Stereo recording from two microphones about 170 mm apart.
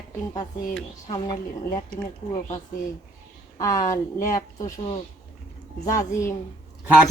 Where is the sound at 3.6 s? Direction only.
20° left (ahead or behind).